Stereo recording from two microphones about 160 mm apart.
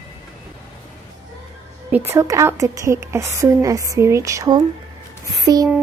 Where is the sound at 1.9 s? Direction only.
15° right (ahead or behind).